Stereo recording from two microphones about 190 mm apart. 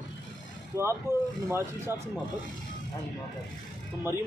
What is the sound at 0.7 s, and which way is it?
A man's voice, 15° right (ahead or behind).